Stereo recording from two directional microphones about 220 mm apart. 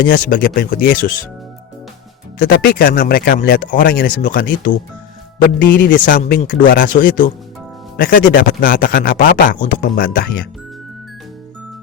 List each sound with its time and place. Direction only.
0.0 s a man's voice: 40° left (ahead or behind)
2.4 s a man's voice: 45° left (ahead or behind)